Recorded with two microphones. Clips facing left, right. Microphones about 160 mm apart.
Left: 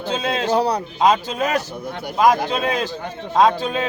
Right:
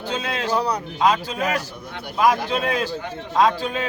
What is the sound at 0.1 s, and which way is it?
Speech, 20° left (ahead or behind).